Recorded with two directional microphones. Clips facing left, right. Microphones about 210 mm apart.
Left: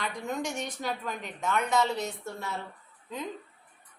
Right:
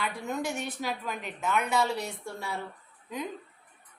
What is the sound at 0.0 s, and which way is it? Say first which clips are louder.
A woman's voice: right 1 dB; 10° right (ahead or behind).